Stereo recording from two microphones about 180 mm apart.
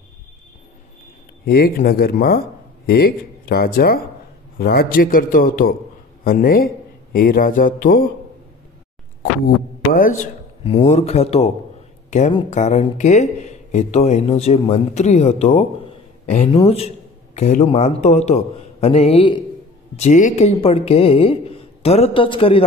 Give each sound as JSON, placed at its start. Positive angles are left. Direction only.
{"t": 1.4, "sound": "a man's voice", "side_deg": 55}
{"t": 9.9, "sound": "a man's voice", "side_deg": 50}
{"t": 10.6, "sound": "a man's voice", "side_deg": 35}
{"t": 20.0, "sound": "speech", "side_deg": 45}